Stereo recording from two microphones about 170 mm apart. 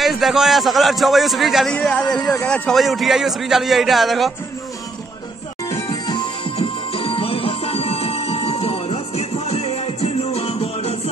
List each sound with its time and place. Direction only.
0.0 s a man's voice: centre (ahead or behind)
5.7 s music: 25° left (ahead or behind)